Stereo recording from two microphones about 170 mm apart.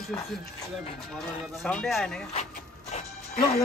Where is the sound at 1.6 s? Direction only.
Centre (ahead or behind).